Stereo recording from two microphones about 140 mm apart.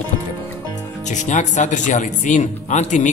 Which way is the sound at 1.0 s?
60° left (ahead or behind).